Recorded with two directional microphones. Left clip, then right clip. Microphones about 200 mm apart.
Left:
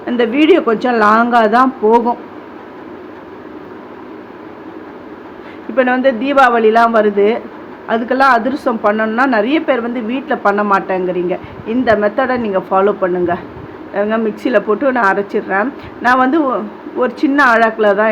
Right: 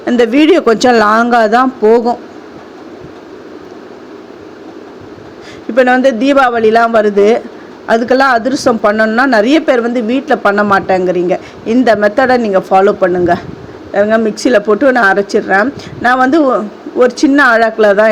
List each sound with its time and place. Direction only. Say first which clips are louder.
0.0 s a woman's voice: right 4 dB; 35° right (ahead or behind)
5.7 s a woman's voice: right 4 dB; 35° right (ahead or behind)